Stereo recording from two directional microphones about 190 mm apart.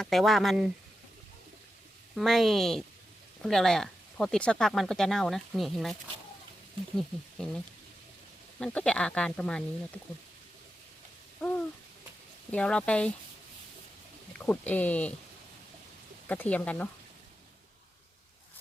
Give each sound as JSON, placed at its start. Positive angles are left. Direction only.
{"t": 0.0, "sound": "speech", "side_deg": 0}
{"t": 2.1, "sound": "speech", "side_deg": 0}
{"t": 11.3, "sound": "a sound", "side_deg": 5}
{"t": 12.5, "sound": "speech", "side_deg": 5}
{"t": 14.3, "sound": "speech", "side_deg": 10}
{"t": 16.2, "sound": "speech", "side_deg": 10}